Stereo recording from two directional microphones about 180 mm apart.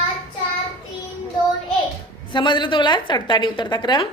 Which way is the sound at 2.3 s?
25° left (ahead or behind).